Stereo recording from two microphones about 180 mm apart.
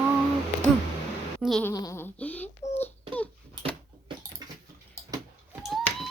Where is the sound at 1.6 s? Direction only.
20° left (ahead or behind).